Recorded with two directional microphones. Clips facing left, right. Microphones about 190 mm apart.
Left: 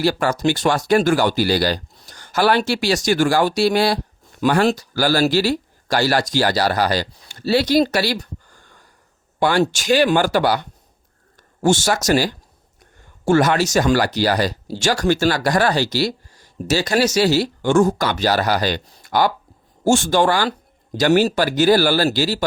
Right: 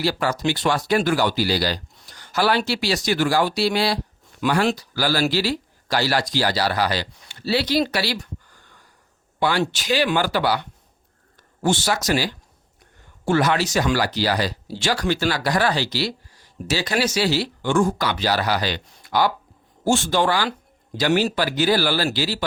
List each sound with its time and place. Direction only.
0.0 s speech: 50° left (ahead or behind)